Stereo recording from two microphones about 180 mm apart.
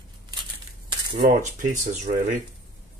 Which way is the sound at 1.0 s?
50° right (ahead or behind).